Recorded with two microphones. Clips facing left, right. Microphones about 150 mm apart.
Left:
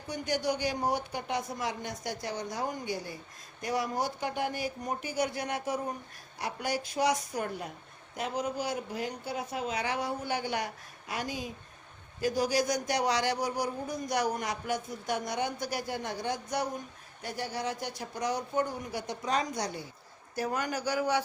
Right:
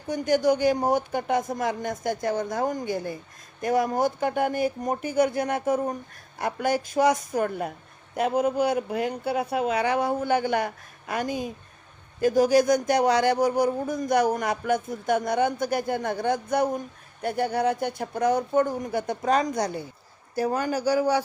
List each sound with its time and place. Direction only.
0.1 s a man's voice: 50° right (ahead or behind)
20.4 s speech: 30° right (ahead or behind)